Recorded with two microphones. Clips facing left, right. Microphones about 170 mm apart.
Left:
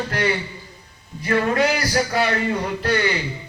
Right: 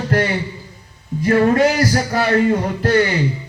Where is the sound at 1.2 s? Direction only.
40° right (ahead or behind).